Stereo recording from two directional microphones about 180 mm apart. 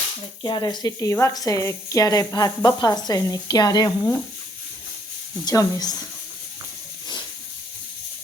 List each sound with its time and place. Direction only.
0.4 s a woman's voice: 25° left (ahead or behind)
5.5 s a woman's voice: 20° left (ahead or behind)